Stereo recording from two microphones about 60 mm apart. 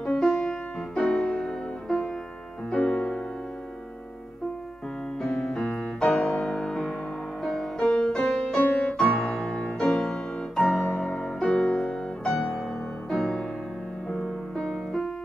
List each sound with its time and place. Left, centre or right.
0.0 s music: centre
5.2 s music: centre
12.4 s music: centre